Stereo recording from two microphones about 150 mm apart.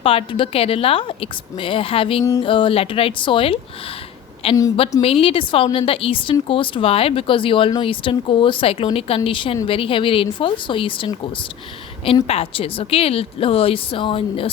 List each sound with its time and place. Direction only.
0.0 s speech: 40° left (ahead or behind)